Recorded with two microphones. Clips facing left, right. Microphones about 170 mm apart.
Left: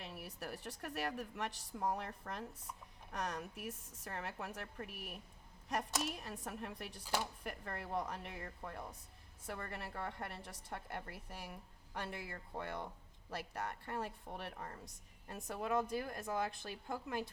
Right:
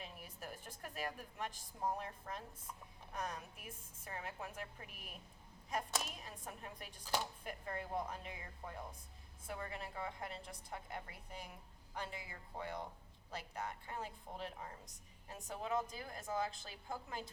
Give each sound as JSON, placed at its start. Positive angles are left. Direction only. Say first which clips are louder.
{"t": 0.0, "sound": "a woman's voice", "louder": "left 4 dB", "side_deg": 75}